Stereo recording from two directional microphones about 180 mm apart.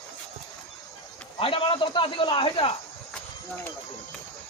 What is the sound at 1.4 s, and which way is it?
Snake, 30° left (ahead or behind).